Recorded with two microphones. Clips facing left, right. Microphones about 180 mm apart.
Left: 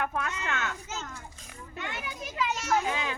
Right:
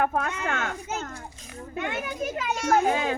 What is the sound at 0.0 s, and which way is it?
Speech, 45° right (ahead or behind).